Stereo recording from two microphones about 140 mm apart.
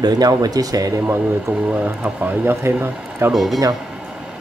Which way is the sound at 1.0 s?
10° right (ahead or behind).